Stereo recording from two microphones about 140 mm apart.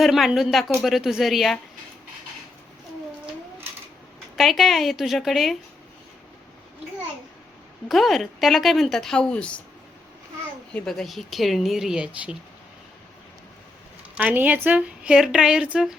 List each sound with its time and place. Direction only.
0.0 s speech: centre (ahead or behind)
4.4 s speech: centre (ahead or behind)
7.9 s speech: centre (ahead or behind)
10.8 s speech: 5° left (ahead or behind)
14.2 s speech: 10° right (ahead or behind)